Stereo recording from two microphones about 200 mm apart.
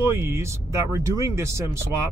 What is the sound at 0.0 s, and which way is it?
Speech, 10° right (ahead or behind).